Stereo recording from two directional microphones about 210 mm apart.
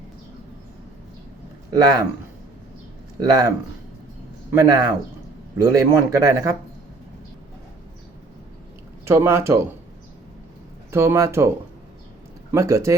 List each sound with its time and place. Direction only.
1.7 s speech: 20° right (ahead or behind)
3.2 s speech: 20° right (ahead or behind)
4.5 s speech: 15° right (ahead or behind)
9.0 s speech: 10° right (ahead or behind)
10.9 s speech: 15° right (ahead or behind)